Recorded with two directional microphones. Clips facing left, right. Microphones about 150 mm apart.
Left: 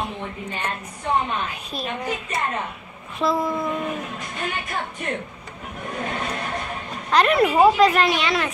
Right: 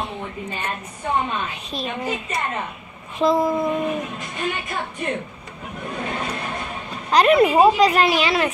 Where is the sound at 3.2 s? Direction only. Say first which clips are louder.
Right 4 dB; 20° right (ahead or behind).